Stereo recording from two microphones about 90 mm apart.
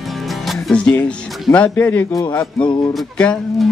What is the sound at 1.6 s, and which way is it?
Speech, 20° left (ahead or behind).